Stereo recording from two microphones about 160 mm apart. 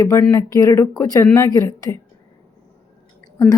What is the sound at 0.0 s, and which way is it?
Speech, 20° left (ahead or behind).